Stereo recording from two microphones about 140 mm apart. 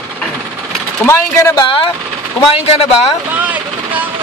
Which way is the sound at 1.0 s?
20° left (ahead or behind).